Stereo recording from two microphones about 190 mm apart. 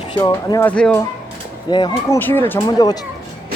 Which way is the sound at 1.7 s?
25° left (ahead or behind).